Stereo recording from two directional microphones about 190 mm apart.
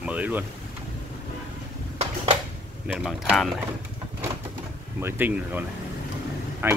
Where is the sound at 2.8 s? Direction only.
5° right (ahead or behind).